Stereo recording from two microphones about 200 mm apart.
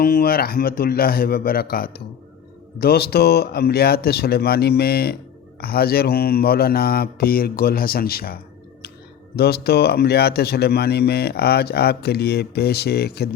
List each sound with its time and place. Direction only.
0.0 s speech: 50° left (ahead or behind)